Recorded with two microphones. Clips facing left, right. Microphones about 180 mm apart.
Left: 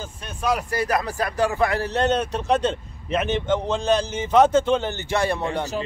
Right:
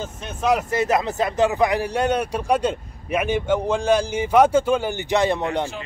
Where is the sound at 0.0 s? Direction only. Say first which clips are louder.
Right 3 dB; 20° right (ahead or behind).